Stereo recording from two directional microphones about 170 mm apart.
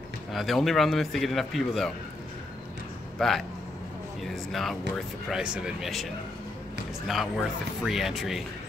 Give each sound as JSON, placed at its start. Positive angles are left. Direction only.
{"t": 0.3, "sound": "speech", "side_deg": 0}
{"t": 3.2, "sound": "a man's voice", "side_deg": 0}
{"t": 7.1, "sound": "speech", "side_deg": 0}